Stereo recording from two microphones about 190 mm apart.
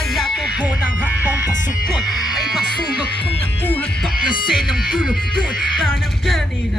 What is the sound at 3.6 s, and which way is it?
Music, 10° left (ahead or behind).